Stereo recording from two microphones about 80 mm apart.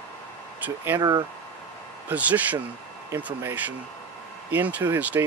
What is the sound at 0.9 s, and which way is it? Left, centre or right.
Speech, right.